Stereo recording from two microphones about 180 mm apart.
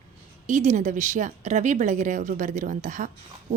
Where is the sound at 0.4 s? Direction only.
45° right (ahead or behind).